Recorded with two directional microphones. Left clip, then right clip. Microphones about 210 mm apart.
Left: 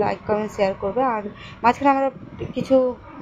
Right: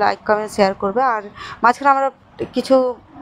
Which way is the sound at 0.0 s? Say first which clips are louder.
Right 5 dB; 25° right (ahead or behind).